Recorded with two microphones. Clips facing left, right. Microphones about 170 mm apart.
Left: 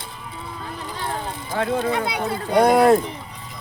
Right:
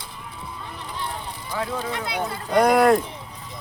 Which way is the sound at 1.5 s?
55° left (ahead or behind).